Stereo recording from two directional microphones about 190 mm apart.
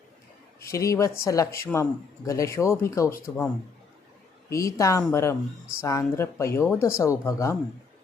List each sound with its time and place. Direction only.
0.6 s speech: 15° left (ahead or behind)